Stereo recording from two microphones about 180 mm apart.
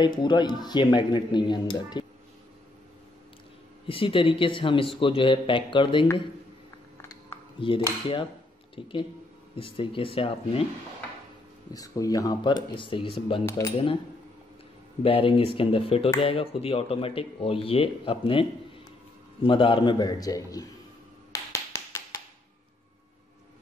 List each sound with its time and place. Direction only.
0.0 s speech: 25° left (ahead or behind)
3.8 s speech: 30° left (ahead or behind)
7.6 s speech: 30° left (ahead or behind)
11.7 s speech: 20° left (ahead or behind)
13.5 s speech: 15° left (ahead or behind)
15.0 s speech: 30° left (ahead or behind)
21.3 s tap: 15° left (ahead or behind)